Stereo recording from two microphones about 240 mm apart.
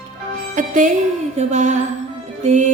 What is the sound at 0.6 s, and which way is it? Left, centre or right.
Music, right.